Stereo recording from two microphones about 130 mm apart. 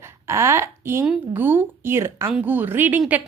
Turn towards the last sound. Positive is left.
turn(degrees=-10)  # may be behind; listen again after turning